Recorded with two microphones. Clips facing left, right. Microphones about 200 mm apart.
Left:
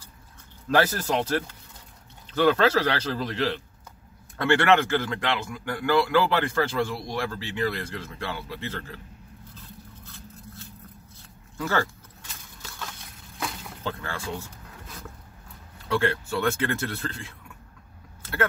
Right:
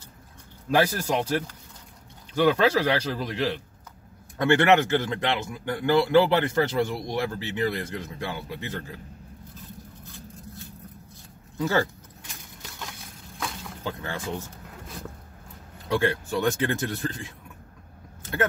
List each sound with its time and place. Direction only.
0.7 s speech: 10° right (ahead or behind)
2.3 s a man's voice: 15° right (ahead or behind)
11.5 s speech: 20° right (ahead or behind)
13.8 s speech: 20° right (ahead or behind)
15.9 s speech: 15° right (ahead or behind)